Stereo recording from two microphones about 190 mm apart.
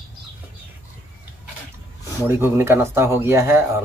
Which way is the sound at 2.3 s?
10° right (ahead or behind).